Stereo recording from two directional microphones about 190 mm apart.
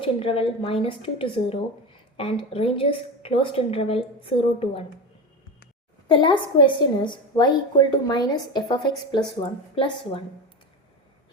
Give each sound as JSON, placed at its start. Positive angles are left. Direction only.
{"t": 0.0, "sound": "a woman's voice", "side_deg": 30}
{"t": 6.1, "sound": "a woman's voice", "side_deg": 25}